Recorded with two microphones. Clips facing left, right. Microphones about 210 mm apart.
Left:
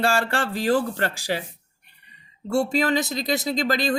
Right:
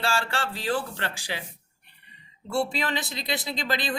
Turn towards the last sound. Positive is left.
turn(degrees=45)  # may be behind; listen again after turning